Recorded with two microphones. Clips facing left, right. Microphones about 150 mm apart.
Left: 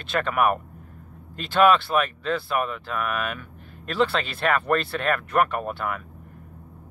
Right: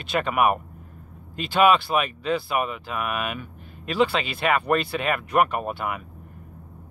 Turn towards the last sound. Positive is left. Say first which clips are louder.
# even
turn(degrees=-10)  # may be behind; listen again after turning